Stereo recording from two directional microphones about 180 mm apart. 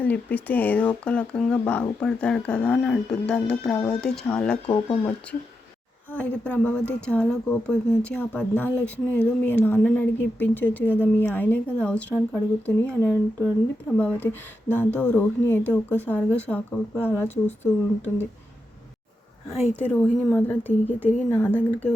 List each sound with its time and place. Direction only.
0.0 s speech: 10° left (ahead or behind)
4.6 s speech: 30° left (ahead or behind)
6.1 s speech: 5° left (ahead or behind)
19.9 s speech: 5° left (ahead or behind)